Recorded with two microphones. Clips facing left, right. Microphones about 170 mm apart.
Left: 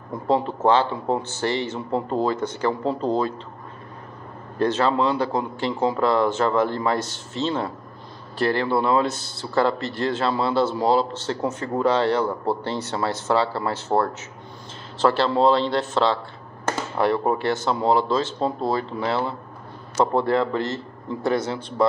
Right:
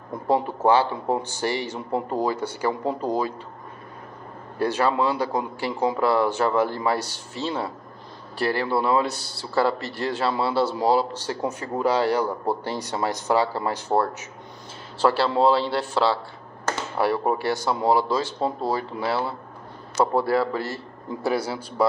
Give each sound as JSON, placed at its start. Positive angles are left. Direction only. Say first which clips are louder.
{"t": 0.3, "sound": "a man's voice", "louder": "left 1 dB", "side_deg": -15}
{"t": 4.6, "sound": "a man's voice", "louder": "left 2 dB", "side_deg": -10}
{"t": 17.3, "sound": "a man's voice", "louder": "left 1 dB", "side_deg": -10}